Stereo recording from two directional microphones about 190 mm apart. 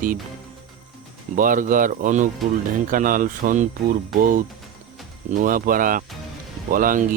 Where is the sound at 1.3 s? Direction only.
45° right (ahead or behind).